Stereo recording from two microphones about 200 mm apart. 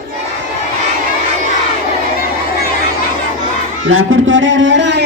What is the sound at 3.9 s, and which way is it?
Speech, 80° right.